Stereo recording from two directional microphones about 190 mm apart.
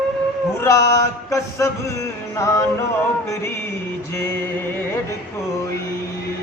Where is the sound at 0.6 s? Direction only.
15° left (ahead or behind).